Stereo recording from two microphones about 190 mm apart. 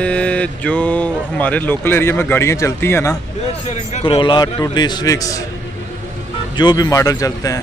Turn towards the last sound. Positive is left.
turn(degrees=20)  # may be behind; listen again after turning